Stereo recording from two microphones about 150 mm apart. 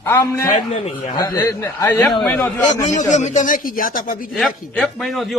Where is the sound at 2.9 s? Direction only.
55° left (ahead or behind).